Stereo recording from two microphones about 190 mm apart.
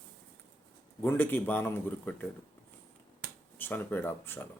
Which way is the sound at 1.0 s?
10° left (ahead or behind).